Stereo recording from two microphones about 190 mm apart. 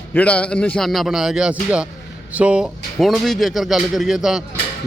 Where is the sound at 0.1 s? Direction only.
10° left (ahead or behind).